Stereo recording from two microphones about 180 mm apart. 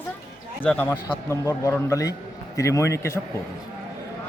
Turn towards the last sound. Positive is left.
turn(degrees=15)  # may be behind; listen again after turning